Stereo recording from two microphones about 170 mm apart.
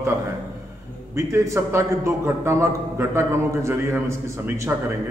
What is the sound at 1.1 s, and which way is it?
A man's voice, 15° right (ahead or behind).